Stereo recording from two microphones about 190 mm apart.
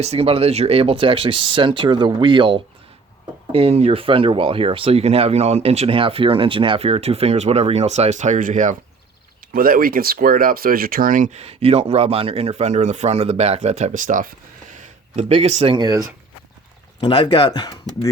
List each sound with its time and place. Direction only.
0.0 s speech: 35° right (ahead or behind)
17.0 s speech: 20° left (ahead or behind)